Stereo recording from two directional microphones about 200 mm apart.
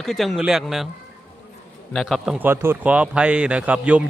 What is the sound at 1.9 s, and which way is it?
A man's voice, centre (ahead or behind).